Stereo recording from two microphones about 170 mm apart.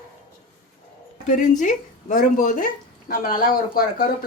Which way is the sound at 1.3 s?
45° left (ahead or behind).